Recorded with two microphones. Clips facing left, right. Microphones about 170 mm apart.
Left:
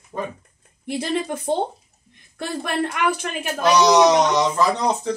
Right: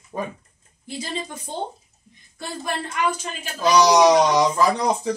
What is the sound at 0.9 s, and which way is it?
Speech, 65° left (ahead or behind).